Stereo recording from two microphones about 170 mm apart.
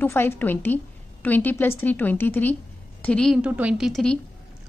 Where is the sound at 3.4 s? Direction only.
10° right (ahead or behind).